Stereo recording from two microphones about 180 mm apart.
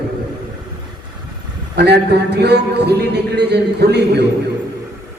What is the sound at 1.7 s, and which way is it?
Speech, 65° right (ahead or behind).